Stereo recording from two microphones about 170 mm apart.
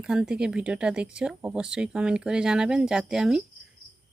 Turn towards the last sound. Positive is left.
turn(degrees=-5)  # may be behind; listen again after turning